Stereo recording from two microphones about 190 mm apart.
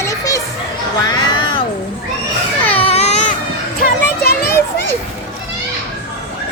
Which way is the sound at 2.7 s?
30° left (ahead or behind).